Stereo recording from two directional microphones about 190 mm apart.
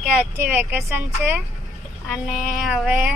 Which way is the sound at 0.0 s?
5° right (ahead or behind).